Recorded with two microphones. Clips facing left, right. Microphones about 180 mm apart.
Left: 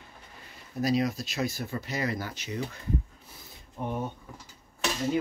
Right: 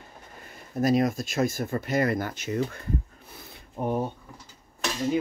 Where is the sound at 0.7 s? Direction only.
50° right (ahead or behind).